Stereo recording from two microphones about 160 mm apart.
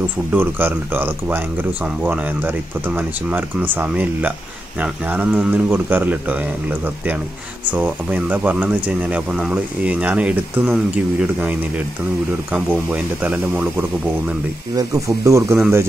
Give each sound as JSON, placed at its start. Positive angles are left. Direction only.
{"t": 0.3, "sound": "speech", "side_deg": -10}
{"t": 14.8, "sound": "speech", "side_deg": -20}